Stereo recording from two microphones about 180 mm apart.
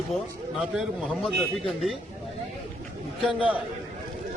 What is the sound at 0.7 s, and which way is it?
A man's voice, centre (ahead or behind).